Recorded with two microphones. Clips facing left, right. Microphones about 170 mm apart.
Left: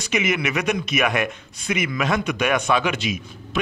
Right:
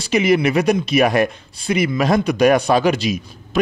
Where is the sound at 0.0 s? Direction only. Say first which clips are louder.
Right 7 dB; 35° right (ahead or behind).